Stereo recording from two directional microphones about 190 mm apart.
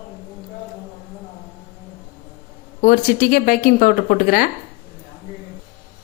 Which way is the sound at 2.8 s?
45° left (ahead or behind).